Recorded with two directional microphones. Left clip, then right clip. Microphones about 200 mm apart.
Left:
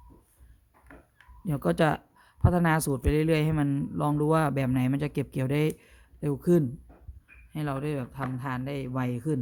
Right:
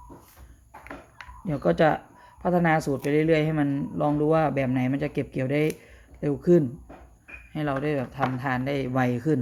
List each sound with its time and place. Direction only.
1.5 s speech: 35° left (ahead or behind); by 9.4 s 15° left (ahead or behind)